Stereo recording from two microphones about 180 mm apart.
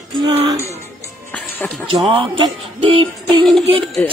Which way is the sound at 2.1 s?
30° right (ahead or behind).